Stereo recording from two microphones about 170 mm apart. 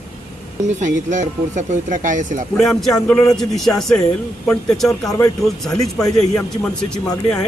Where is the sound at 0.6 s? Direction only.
45° right (ahead or behind).